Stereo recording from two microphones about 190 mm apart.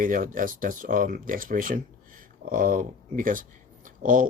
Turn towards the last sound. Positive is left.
turn(degrees=-45)  # may be behind; listen again after turning